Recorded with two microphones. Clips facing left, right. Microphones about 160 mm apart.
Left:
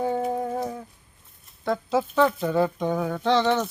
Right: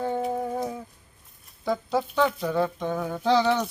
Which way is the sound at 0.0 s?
5° left (ahead or behind).